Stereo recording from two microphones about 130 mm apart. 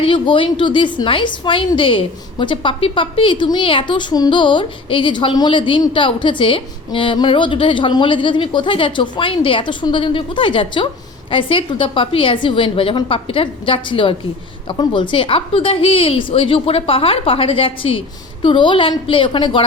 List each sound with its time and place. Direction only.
0.0 s a woman's voice: 40° left (ahead or behind)